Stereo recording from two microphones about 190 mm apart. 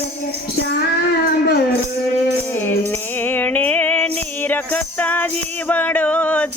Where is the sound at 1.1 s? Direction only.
55° left (ahead or behind).